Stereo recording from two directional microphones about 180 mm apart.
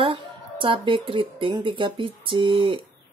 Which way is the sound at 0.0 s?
30° right (ahead or behind).